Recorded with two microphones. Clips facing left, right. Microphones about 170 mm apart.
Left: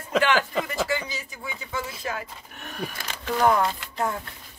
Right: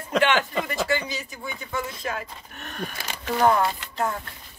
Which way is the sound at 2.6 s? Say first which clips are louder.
Even; 5° left (ahead or behind).